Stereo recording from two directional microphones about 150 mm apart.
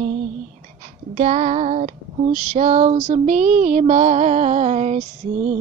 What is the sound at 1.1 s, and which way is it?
Female singing, 50° right (ahead or behind).